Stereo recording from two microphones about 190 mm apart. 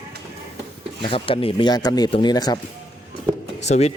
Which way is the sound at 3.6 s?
35° left (ahead or behind).